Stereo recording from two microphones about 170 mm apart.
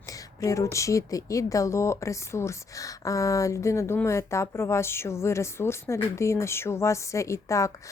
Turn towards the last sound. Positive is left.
turn(degrees=15)  # may be behind; listen again after turning